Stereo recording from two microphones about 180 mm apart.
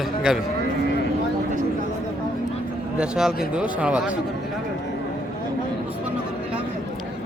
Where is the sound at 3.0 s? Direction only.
5° right (ahead or behind).